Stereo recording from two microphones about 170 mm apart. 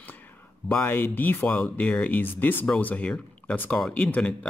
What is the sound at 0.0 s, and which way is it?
Speech, 10° left (ahead or behind).